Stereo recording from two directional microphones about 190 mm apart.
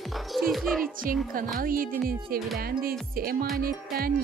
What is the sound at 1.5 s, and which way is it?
Speech, 50° right (ahead or behind).